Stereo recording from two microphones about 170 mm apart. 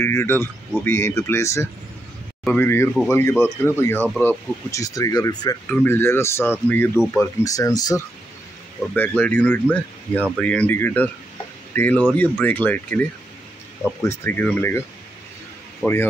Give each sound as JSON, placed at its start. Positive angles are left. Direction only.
{"t": 0.0, "sound": "speech", "side_deg": 15}
{"t": 5.7, "sound": "speech", "side_deg": 10}
{"t": 8.9, "sound": "speech", "side_deg": 10}
{"t": 14.0, "sound": "speech", "side_deg": 10}
{"t": 15.8, "sound": "speech", "side_deg": 15}